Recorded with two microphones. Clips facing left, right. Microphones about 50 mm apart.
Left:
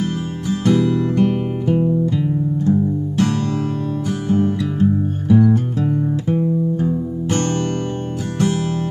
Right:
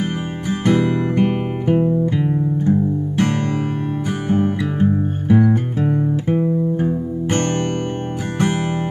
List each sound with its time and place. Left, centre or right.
0.5 s music: right
6.2 s guitar: right